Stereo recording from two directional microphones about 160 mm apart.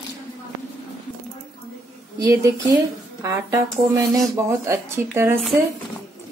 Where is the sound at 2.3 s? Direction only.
20° right (ahead or behind).